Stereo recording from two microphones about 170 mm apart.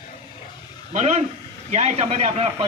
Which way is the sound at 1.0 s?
40° right (ahead or behind).